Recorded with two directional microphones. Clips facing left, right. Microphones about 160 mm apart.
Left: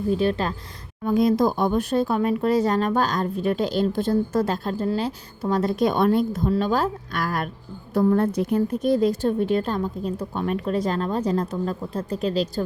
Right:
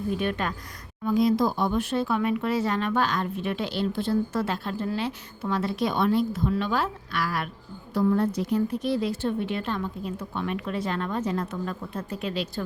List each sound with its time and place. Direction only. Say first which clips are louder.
0.1 s speech: left 6 dB; 30° left (ahead or behind)
1.0 s speech: left 3 dB; 50° left (ahead or behind)